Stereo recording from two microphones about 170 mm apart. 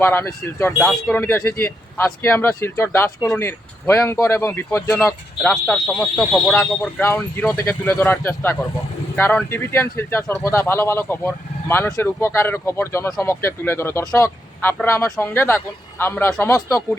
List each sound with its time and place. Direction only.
0.0 s speech: 15° left (ahead or behind)